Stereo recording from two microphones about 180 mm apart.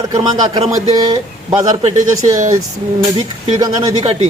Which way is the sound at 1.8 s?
35° right (ahead or behind).